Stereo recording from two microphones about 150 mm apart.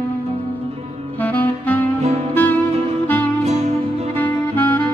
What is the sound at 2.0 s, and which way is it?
Saxophone, 45° right (ahead or behind).